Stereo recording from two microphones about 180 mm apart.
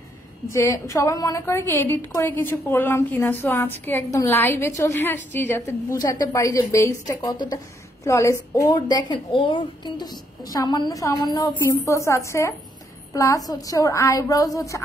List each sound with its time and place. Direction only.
0.5 s a woman's voice: 15° left (ahead or behind)